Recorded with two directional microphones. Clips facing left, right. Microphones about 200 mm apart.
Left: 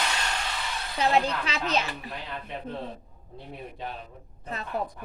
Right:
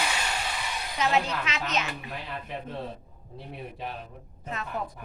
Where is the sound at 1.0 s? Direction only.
35° left (ahead or behind).